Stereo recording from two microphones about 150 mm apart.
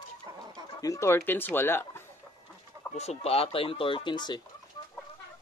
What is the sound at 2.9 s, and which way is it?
Speech, 45° left (ahead or behind).